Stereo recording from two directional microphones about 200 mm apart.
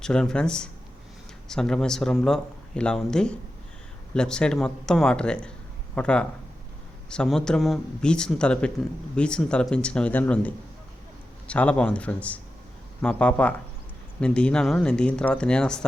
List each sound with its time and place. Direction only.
0.0 s a man's voice: 5° left (ahead or behind)